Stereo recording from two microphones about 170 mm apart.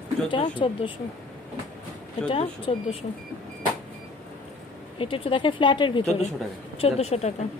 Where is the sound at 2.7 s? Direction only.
35° left (ahead or behind).